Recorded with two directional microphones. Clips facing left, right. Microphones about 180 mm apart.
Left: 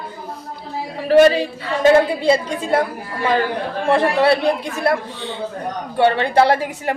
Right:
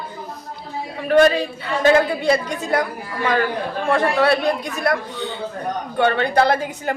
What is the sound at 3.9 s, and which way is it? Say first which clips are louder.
A woman's voice: left 2 dB; 30° left (ahead or behind).